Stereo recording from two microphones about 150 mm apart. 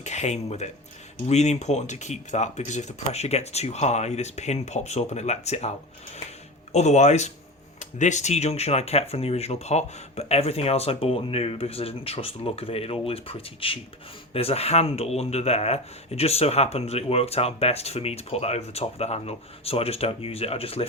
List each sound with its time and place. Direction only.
0.0 s speech: 50° left (ahead or behind)
6.7 s speech: 50° left (ahead or behind)